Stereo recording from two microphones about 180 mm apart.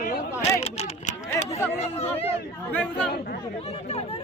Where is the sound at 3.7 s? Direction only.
35° left (ahead or behind).